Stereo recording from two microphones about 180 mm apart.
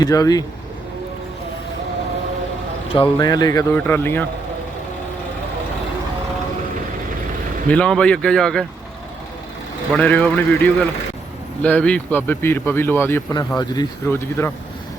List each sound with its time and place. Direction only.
0.0 s speech: 20° left (ahead or behind)
3.0 s speech: 20° left (ahead or behind)
7.7 s speech: 5° left (ahead or behind)
9.9 s speech: 5° left (ahead or behind)